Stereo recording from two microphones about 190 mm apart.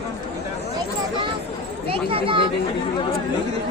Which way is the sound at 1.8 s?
30° right (ahead or behind).